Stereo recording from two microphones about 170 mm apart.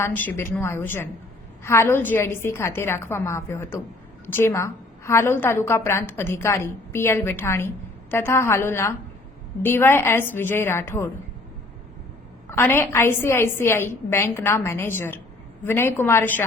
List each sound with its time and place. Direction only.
0.0 s a woman's voice: 10° left (ahead or behind)
12.5 s a woman's voice: 15° left (ahead or behind)